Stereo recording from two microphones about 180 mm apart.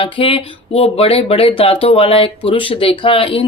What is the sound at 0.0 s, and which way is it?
Speech, 30° left (ahead or behind).